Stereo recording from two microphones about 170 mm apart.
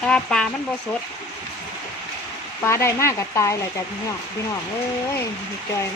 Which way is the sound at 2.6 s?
15° left (ahead or behind).